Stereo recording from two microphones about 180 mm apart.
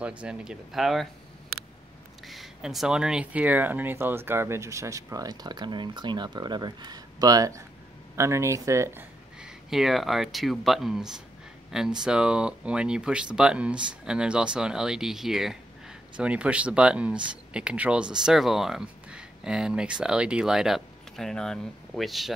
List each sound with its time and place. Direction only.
0.0 s speech: 5° right (ahead or behind)
2.2 s speech: centre (ahead or behind)
9.4 s speech: centre (ahead or behind)